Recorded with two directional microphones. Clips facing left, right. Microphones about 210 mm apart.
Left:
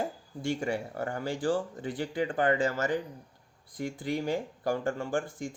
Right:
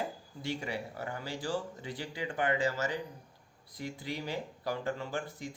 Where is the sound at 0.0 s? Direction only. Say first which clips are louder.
Left 5 dB; 50° left (ahead or behind).